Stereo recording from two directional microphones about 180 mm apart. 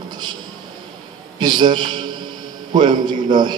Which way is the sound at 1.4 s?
25° right (ahead or behind).